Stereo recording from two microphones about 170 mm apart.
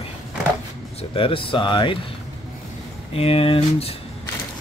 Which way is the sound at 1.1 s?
30° left (ahead or behind).